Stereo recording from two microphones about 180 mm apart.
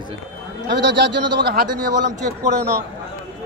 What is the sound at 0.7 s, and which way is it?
Speech, 70° right (ahead or behind).